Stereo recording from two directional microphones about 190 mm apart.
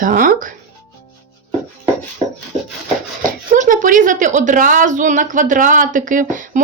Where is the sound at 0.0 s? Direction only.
45° right (ahead or behind).